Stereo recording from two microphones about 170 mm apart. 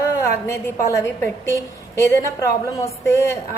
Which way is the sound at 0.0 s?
15° left (ahead or behind).